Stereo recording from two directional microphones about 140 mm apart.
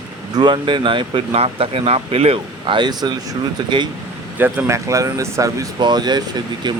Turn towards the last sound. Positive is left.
turn(degrees=-30)  # may be behind; listen again after turning